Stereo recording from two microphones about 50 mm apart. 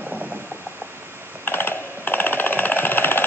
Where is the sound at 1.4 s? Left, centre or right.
Left.